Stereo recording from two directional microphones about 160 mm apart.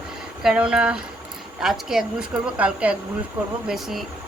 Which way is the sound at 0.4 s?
5° right (ahead or behind).